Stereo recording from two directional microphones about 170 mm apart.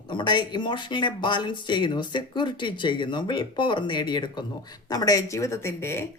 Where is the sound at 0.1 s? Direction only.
30° left (ahead or behind).